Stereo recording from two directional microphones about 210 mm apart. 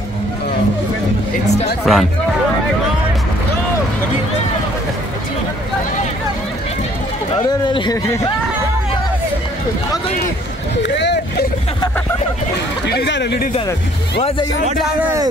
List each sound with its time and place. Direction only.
1.9 s speech: centre (ahead or behind)
7.4 s speech: 20° left (ahead or behind)
10.8 s a sound: 55° left (ahead or behind)
12.8 s speech: 55° left (ahead or behind)